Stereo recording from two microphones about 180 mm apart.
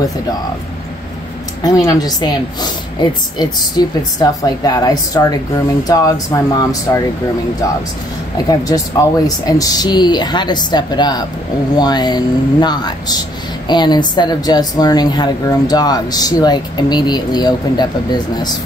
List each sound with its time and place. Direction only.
1.6 s speech: 20° left (ahead or behind)
8.5 s speech: 20° left (ahead or behind)